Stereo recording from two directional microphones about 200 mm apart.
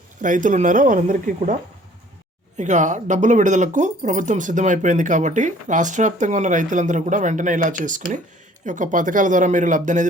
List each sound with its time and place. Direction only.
0.2 s speech: 40° right (ahead or behind)
2.6 s speech: 35° right (ahead or behind)